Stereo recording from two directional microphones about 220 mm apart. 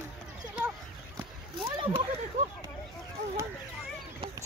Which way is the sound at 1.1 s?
20° right (ahead or behind).